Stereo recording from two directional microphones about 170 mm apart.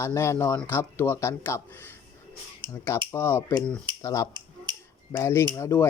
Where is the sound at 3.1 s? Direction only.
15° left (ahead or behind).